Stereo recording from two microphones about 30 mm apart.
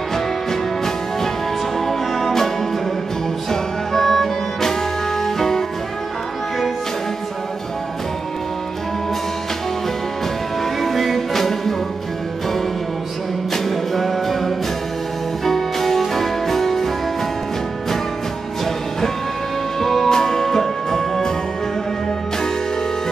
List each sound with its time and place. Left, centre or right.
0.1 s music: centre
10.6 s music: centre
13.5 s music: centre
19.8 s music: centre